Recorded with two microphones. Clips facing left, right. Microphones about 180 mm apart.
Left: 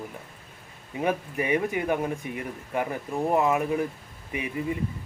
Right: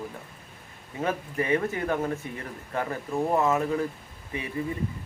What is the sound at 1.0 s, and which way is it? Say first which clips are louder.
Speech: left 1 dB; 15° left (ahead or behind).